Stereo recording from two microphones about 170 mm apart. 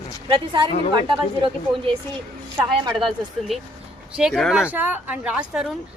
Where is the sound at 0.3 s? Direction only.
25° right (ahead or behind).